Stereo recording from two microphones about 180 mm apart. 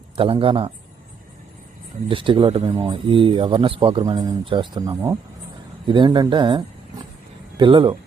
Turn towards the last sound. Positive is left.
turn(degrees=-25)  # may be behind; listen again after turning